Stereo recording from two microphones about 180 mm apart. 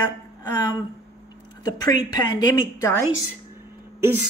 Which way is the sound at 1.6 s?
25° left (ahead or behind).